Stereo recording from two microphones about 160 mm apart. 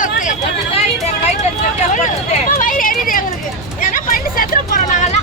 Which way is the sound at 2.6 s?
60° left (ahead or behind).